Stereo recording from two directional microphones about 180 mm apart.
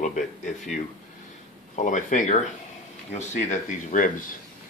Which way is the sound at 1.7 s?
45° left (ahead or behind).